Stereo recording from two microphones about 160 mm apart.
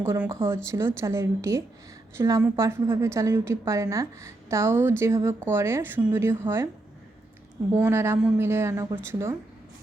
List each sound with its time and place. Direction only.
0.0 s a woman's voice: 15° right (ahead or behind)
7.7 s a woman's voice: 15° right (ahead or behind)